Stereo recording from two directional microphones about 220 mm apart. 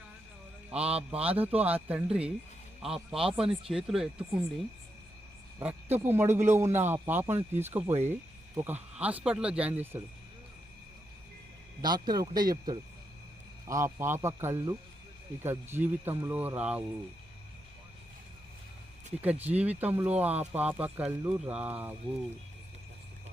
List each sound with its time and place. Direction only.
0.7 s a man's voice: 5° right (ahead or behind)
5.5 s speech: 10° right (ahead or behind)
7.9 s speech: 30° right (ahead or behind)
8.5 s speech: 10° right (ahead or behind)
11.8 s speech: 20° right (ahead or behind)
19.1 s speech: 5° right (ahead or behind)